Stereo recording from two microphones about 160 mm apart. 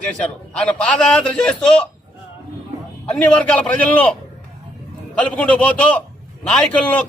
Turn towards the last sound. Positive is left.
turn(degrees=10)  # may be behind; listen again after turning